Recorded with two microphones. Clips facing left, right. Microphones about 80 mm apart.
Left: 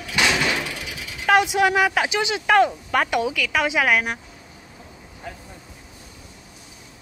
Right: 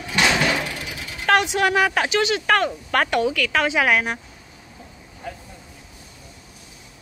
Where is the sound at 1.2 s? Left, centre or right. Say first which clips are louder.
Left 1 dB; centre.